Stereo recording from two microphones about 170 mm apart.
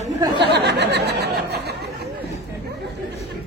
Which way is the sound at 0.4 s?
85° right.